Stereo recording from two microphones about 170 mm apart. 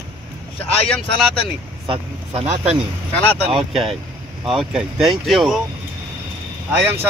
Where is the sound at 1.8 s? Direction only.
30° right (ahead or behind).